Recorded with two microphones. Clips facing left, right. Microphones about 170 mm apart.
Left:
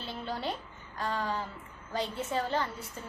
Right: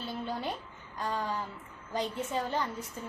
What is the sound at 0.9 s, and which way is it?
A woman's voice, 15° right (ahead or behind).